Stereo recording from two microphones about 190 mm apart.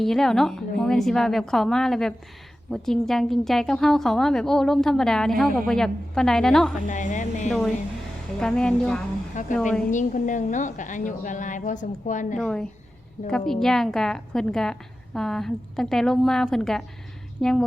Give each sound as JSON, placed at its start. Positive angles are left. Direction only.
{"t": 0.0, "sound": "a woman's voice", "side_deg": 0}
{"t": 6.8, "sound": "a woman's voice", "side_deg": 40}
{"t": 8.4, "sound": "a woman's voice", "side_deg": 5}
{"t": 9.3, "sound": "a woman's voice", "side_deg": 40}
{"t": 9.6, "sound": "a woman's voice", "side_deg": 5}
{"t": 9.9, "sound": "a woman's voice", "side_deg": 40}
{"t": 12.4, "sound": "a woman's voice", "side_deg": 5}